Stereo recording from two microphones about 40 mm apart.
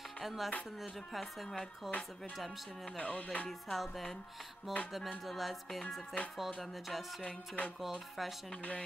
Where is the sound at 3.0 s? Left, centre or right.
Left.